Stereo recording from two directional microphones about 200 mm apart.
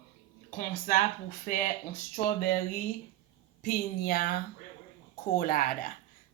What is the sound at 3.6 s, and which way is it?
Speech, 50° left (ahead or behind).